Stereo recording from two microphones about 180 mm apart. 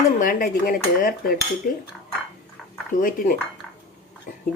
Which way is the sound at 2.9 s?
50° left (ahead or behind).